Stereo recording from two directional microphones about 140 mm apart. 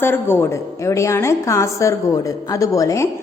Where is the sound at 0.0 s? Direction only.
15° left (ahead or behind).